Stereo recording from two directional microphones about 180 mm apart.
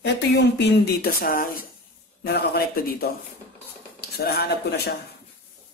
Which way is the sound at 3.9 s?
60° left (ahead or behind).